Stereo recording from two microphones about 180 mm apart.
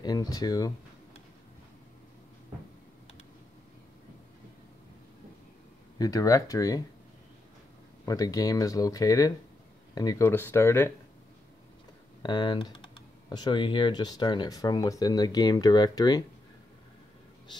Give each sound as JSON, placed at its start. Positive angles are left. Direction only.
{"t": 0.0, "sound": "speech", "side_deg": 20}
{"t": 5.9, "sound": "speech", "side_deg": 20}
{"t": 8.0, "sound": "speech", "side_deg": 20}
{"t": 12.2, "sound": "speech", "side_deg": 25}